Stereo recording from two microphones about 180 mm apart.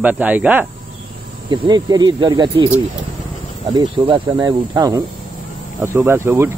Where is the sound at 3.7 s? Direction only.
25° right (ahead or behind).